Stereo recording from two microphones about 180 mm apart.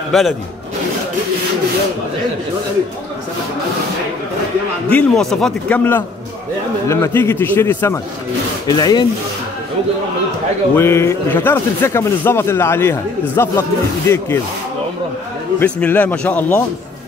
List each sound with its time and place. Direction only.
0.1 s speech: centre (ahead or behind)
4.8 s speech: 5° left (ahead or behind); by 9.0 s 20° left (ahead or behind)
10.8 s speech: 15° left (ahead or behind)
15.6 s speech: 10° left (ahead or behind)